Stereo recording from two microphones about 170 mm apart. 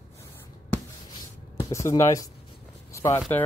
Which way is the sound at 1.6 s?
15° left (ahead or behind).